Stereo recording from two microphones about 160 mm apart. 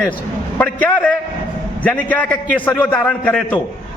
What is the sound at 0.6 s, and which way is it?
A man's voice, 10° left (ahead or behind).